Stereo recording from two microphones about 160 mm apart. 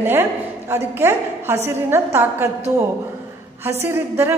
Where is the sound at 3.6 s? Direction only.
15° right (ahead or behind).